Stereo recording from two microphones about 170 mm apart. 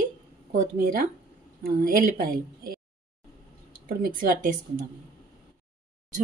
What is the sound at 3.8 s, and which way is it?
A woman's voice, 55° right (ahead or behind).